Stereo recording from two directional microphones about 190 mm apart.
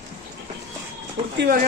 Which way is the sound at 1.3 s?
55° right (ahead or behind).